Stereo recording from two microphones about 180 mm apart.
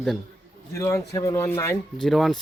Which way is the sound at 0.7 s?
15° left (ahead or behind).